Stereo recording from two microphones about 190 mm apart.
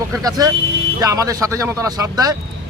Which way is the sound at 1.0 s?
20° right (ahead or behind).